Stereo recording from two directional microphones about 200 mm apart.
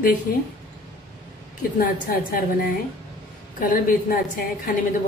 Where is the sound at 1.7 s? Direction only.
45° left (ahead or behind).